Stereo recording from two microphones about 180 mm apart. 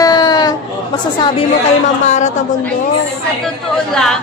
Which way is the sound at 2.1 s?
40° left (ahead or behind).